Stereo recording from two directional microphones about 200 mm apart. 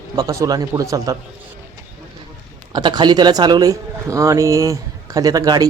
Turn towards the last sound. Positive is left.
turn(degrees=-20)  # may be behind; listen again after turning